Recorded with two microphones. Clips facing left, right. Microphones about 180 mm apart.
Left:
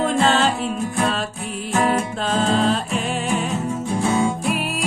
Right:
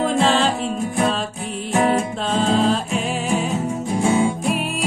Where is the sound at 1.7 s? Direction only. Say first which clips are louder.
Right 2 dB; 20° right (ahead or behind).